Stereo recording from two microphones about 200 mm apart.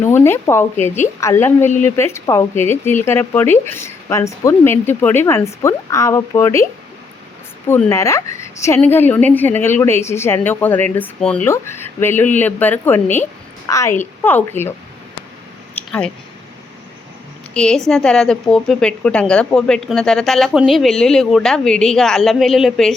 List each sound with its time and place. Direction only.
0.0 s speech: 10° left (ahead or behind)
7.7 s speech: 15° left (ahead or behind)
15.7 s a sound: 5° left (ahead or behind)
17.5 s a woman's voice: 5° left (ahead or behind)